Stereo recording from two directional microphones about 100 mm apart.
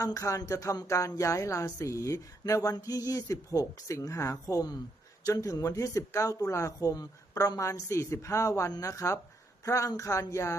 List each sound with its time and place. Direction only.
0.0 s speech: 35° left (ahead or behind)